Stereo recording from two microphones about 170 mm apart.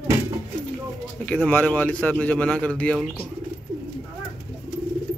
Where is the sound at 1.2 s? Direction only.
5° left (ahead or behind).